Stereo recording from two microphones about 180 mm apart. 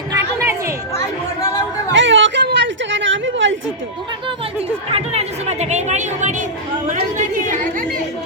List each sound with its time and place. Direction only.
1.9 s a sound: 90° right
4.9 s chatter: 35° right (ahead or behind)
7.5 s chatter: 45° right (ahead or behind)